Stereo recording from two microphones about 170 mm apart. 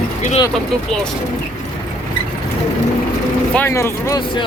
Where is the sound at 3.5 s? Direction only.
15° left (ahead or behind).